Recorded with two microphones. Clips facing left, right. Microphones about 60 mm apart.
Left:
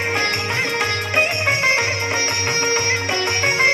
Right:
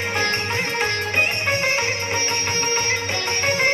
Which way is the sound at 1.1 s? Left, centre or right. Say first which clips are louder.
Left 3 dB; left.